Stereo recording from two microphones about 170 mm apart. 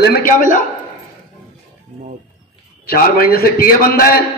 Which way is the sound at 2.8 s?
60° left (ahead or behind).